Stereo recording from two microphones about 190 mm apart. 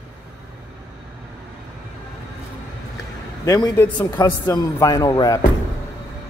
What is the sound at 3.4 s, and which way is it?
Speech, 20° left (ahead or behind).